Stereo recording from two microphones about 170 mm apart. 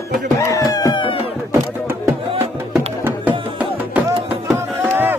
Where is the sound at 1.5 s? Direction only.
15° right (ahead or behind).